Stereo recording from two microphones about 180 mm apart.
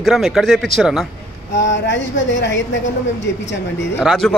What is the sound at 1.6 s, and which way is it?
Speech, 90° left.